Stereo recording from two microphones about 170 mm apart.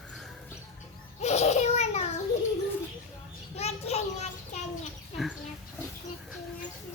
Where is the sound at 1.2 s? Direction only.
40° left (ahead or behind).